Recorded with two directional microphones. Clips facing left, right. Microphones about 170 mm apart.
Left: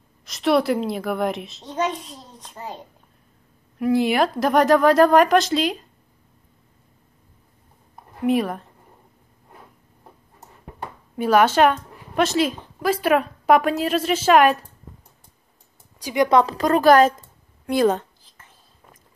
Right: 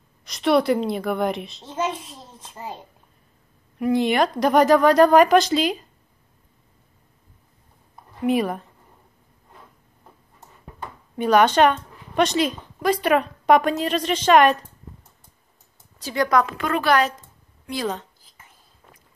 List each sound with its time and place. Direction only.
0.2 s a child's voice: centre (ahead or behind)
8.2 s a child's voice: centre (ahead or behind)
10.8 s speech: 5° left (ahead or behind)
16.0 s speech: 15° left (ahead or behind)
16.3 s a woman's voice: 30° left (ahead or behind); by 18.0 s 55° left (ahead or behind)